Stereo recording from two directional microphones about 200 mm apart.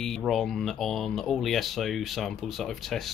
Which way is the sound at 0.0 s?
Centre (ahead or behind).